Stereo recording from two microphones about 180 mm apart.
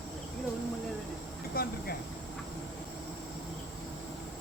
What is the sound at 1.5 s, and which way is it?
Vehicle, 55° left (ahead or behind).